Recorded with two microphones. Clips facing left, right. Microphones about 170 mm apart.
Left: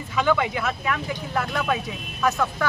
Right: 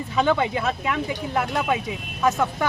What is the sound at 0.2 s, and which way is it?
Speech, 30° right (ahead or behind).